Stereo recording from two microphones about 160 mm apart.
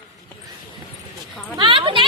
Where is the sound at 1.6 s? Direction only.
30° right (ahead or behind).